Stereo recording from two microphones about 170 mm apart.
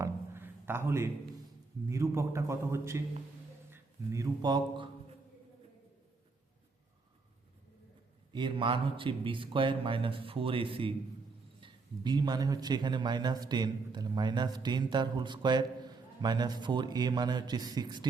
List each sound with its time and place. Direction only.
0.0 s a sound: 15° right (ahead or behind)
1.9 s a man's voice: 15° right (ahead or behind)
8.3 s a man's voice: 30° right (ahead or behind)